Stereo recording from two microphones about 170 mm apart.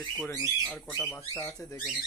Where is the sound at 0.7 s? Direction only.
5° left (ahead or behind).